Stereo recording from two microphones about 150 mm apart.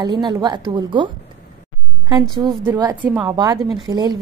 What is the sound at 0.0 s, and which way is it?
A woman's voice, 25° right (ahead or behind).